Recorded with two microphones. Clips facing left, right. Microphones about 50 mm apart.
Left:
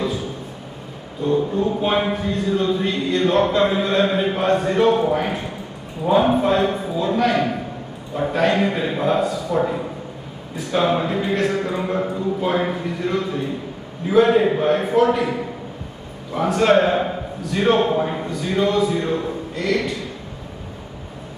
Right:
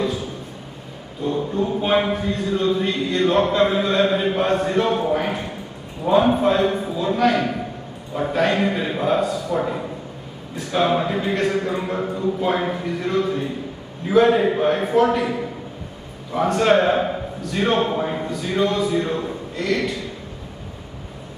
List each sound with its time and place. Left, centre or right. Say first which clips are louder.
1.6 s a man's voice: even; centre
16.3 s a man's voice: left 1 dB; centre
18.9 s a man's voice: even; left